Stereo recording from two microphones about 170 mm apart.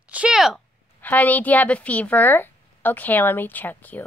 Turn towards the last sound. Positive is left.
turn(degrees=10)  # may be behind; listen again after turning